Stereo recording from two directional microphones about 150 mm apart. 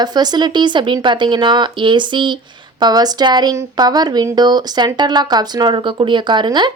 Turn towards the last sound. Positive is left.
turn(degrees=-30)  # may be behind; listen again after turning